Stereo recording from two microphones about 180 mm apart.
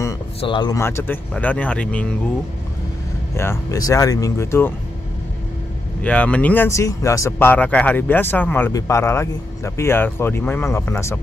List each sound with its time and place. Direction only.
0.4 s speech: 25° left (ahead or behind)
0.7 s speech: 15° left (ahead or behind)
3.3 s speech: 15° left (ahead or behind)
6.0 s speech: 5° left (ahead or behind)